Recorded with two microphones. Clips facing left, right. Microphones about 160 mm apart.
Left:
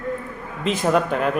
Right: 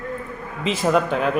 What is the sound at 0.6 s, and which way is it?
Speech, centre (ahead or behind).